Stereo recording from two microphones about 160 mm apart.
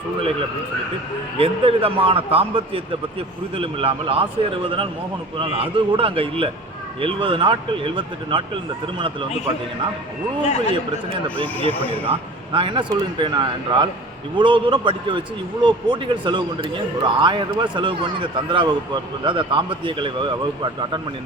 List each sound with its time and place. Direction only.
1.4 s a man's voice: 35° right (ahead or behind)
5.4 s a man's voice: 35° right (ahead or behind)
10.4 s a man's voice: 45° left (ahead or behind)
11.7 s speech: 10° left (ahead or behind)
12.5 s a man's voice: 30° right (ahead or behind)